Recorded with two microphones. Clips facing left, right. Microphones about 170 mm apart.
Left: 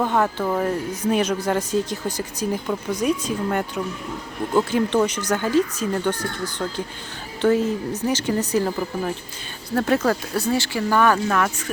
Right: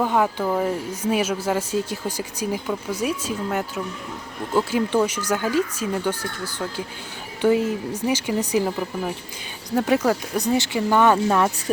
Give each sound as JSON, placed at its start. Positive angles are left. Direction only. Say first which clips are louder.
{"t": 0.0, "sound": "speech", "louder": "even", "side_deg": -10}